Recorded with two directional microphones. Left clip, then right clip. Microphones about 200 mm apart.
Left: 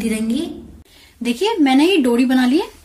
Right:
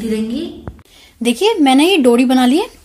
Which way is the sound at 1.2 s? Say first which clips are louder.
Right 4 dB; 40° right (ahead or behind).